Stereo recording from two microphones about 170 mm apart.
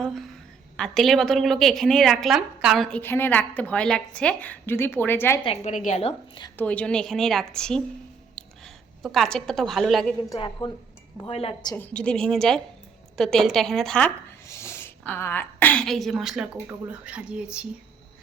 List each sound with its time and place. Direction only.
0.0 s a sound: centre (ahead or behind)
0.8 s a woman's voice: centre (ahead or behind)
3.0 s a woman's voice: 10° left (ahead or behind)
5.5 s a woman's voice: 45° left (ahead or behind)
6.6 s a woman's voice: 5° left (ahead or behind)
10.3 s a woman's voice: 25° left (ahead or behind)
11.7 s a woman's voice: 10° left (ahead or behind)
14.4 s a woman's voice: 15° left (ahead or behind); by 17.7 s 5° right (ahead or behind)